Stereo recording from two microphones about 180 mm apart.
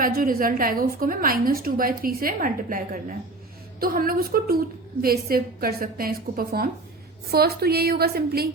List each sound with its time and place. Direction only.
0.0 s a woman's voice: 50° right (ahead or behind)